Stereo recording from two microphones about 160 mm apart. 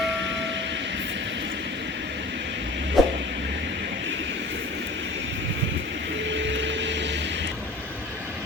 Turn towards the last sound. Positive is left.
turn(degrees=-90)